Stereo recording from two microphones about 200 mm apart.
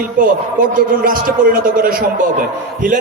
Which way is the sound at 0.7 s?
45° right (ahead or behind).